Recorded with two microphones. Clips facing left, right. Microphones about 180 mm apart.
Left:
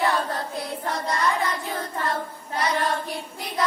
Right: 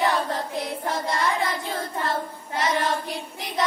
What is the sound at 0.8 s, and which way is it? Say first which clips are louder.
Child singing: left 1 dB; 25° right (ahead or behind).